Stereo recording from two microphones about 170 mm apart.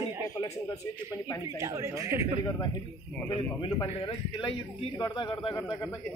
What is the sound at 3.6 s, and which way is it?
Speech, 30° left (ahead or behind).